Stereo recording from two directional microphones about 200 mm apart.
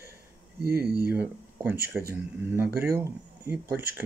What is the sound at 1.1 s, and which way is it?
Speech, 10° right (ahead or behind).